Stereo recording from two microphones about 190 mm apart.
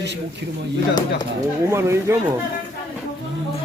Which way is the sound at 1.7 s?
15° right (ahead or behind).